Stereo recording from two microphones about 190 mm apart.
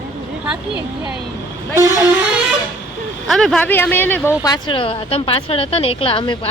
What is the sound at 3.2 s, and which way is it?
Speech, centre (ahead or behind).